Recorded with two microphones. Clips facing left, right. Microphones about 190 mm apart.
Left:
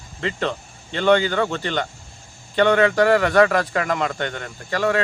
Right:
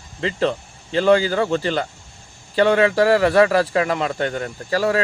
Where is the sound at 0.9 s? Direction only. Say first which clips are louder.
Right 2 dB; 35° right (ahead or behind).